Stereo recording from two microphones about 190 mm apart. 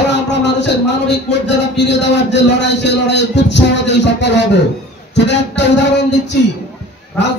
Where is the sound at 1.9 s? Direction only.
65° left (ahead or behind).